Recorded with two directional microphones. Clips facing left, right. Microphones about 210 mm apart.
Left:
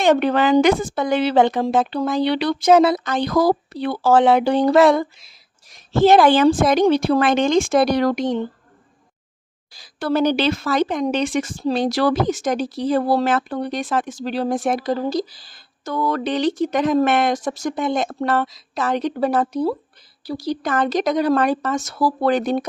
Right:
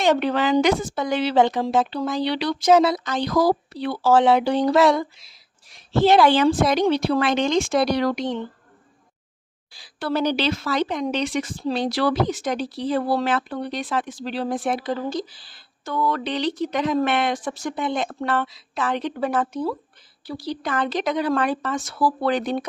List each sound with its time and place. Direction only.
0.0 s speech: 55° left (ahead or behind)
9.7 s speech: 45° left (ahead or behind)